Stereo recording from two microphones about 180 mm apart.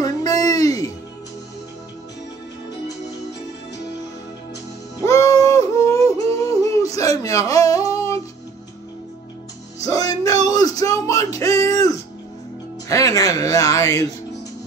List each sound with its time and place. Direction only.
0.0 s music: 20° left (ahead or behind)
5.0 s yodeling: 15° left (ahead or behind)
9.8 s music: 20° left (ahead or behind)